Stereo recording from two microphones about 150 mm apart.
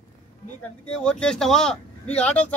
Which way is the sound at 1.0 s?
5° left (ahead or behind).